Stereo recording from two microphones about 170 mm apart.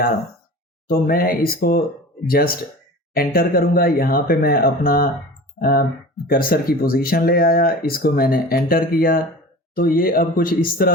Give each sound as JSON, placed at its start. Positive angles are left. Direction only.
{"t": 0.9, "sound": "speech", "side_deg": 60}